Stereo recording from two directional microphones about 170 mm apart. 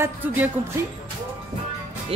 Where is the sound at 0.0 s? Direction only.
10° right (ahead or behind).